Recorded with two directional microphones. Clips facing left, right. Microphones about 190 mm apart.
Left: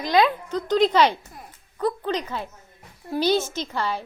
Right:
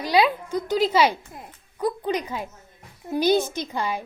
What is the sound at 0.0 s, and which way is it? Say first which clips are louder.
A child's voice: even; 10° right (ahead or behind).